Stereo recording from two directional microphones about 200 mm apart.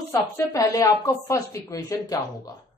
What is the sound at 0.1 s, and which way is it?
Speech, 15° left (ahead or behind).